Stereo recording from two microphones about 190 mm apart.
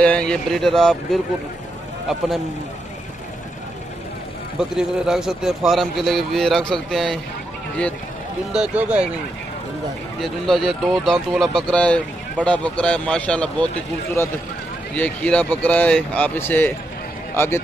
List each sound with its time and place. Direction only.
0.0 s a man's voice: 5° left (ahead or behind)
4.6 s a man's voice: 5° right (ahead or behind)
8.5 s speech: 5° right (ahead or behind)
10.2 s a man's voice: centre (ahead or behind)